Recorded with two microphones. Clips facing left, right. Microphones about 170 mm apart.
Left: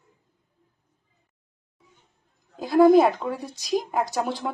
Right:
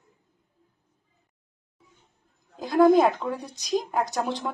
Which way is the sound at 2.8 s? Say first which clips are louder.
Left 2 dB; 10° left (ahead or behind).